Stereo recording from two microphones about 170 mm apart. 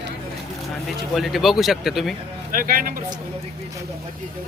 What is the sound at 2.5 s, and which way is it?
Speech, 55° right (ahead or behind).